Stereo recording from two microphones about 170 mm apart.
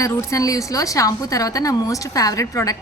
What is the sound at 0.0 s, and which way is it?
A woman's voice, 15° left (ahead or behind).